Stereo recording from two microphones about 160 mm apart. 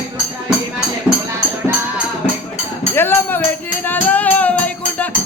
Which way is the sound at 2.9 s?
15° left (ahead or behind).